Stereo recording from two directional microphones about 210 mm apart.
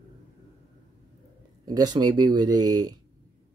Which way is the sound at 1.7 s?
20° right (ahead or behind).